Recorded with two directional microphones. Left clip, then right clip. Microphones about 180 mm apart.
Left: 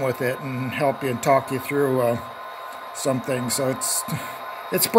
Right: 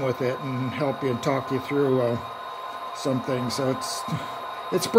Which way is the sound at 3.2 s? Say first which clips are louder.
Left 2 dB; 10° left (ahead or behind).